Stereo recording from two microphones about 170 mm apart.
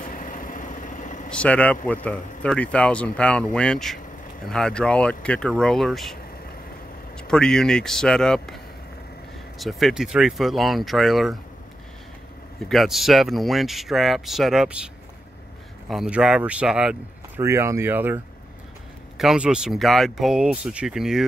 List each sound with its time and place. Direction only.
0.0 s vehicle: 50° left (ahead or behind)
1.3 s speech: 10° left (ahead or behind)
7.2 s speech: 5° left (ahead or behind)
9.6 s speech: centre (ahead or behind)
12.6 s speech: centre (ahead or behind)
15.9 s speech: 5° right (ahead or behind)
17.4 s speech: 15° right (ahead or behind)